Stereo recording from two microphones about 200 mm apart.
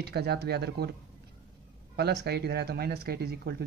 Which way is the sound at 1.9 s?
55° right (ahead or behind).